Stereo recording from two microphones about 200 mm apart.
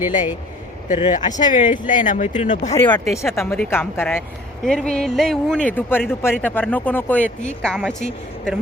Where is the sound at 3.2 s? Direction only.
15° left (ahead or behind).